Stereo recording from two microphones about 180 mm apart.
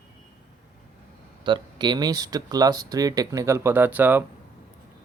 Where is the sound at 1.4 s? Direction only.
25° right (ahead or behind); by 4.2 s 10° right (ahead or behind).